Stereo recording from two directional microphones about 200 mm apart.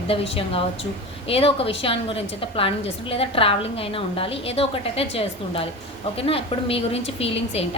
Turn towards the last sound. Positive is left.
turn(degrees=30)  # may be behind; listen again after turning